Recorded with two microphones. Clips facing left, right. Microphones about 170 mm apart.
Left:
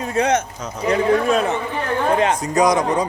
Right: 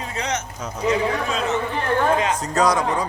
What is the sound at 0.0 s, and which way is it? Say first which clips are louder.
A man's voice: left 8 dB; 50° left (ahead or behind).